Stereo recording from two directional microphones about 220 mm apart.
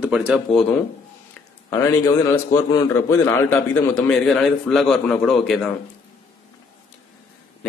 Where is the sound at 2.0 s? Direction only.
15° left (ahead or behind).